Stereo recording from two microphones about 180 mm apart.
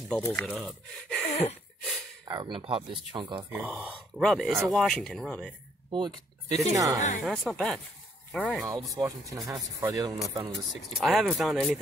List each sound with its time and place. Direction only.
0.3 s speech: 5° left (ahead or behind)
1.2 s a sound: 35° left (ahead or behind)
2.2 s speech: 25° right (ahead or behind)
3.5 s speech: 10° right (ahead or behind)
3.9 s speech: centre (ahead or behind)
5.9 s speech: 25° right (ahead or behind)
7.0 s speech: 45° left (ahead or behind)
7.2 s speech: centre (ahead or behind)
8.7 s speech: 20° right (ahead or behind)
10.7 s speech: centre (ahead or behind)